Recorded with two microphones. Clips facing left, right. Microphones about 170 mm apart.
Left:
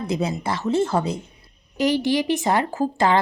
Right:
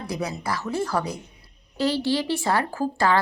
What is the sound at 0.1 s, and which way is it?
A woman's voice, 25° left (ahead or behind).